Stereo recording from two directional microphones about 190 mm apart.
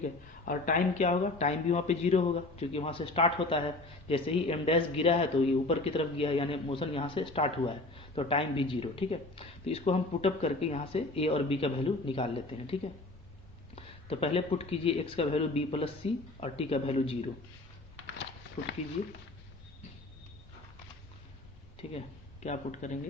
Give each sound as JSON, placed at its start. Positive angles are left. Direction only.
{"t": 0.0, "sound": "speech", "side_deg": 45}
{"t": 21.8, "sound": "speech", "side_deg": 30}
{"t": 22.4, "sound": "speech", "side_deg": 40}